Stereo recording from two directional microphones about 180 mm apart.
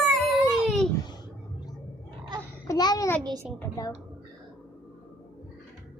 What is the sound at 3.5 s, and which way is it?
Speech, 20° left (ahead or behind).